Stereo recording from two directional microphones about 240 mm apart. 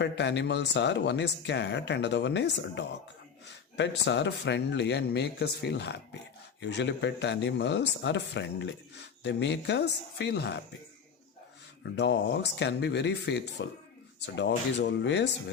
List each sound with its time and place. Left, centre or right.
0.0 s speech: left
11.8 s speech: left